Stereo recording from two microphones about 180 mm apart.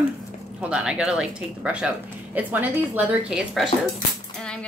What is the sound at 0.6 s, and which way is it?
A woman's voice, 5° right (ahead or behind).